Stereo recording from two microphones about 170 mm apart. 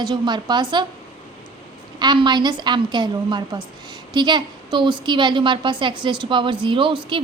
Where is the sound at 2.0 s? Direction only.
25° right (ahead or behind).